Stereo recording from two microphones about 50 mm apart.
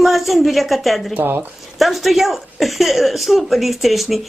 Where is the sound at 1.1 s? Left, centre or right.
Right.